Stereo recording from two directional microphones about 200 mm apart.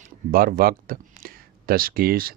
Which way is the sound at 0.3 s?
45° right (ahead or behind).